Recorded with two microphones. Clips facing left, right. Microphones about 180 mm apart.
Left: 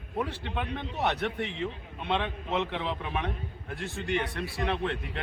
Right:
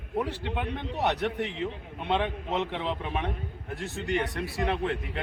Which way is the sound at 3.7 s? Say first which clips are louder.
Right 1 dB; 40° right (ahead or behind).